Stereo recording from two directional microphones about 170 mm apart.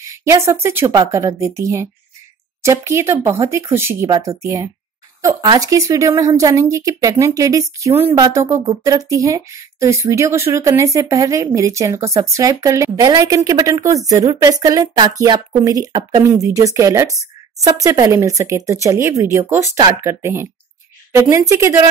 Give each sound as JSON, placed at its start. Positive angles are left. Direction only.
{"t": 0.1, "sound": "speech", "side_deg": -20}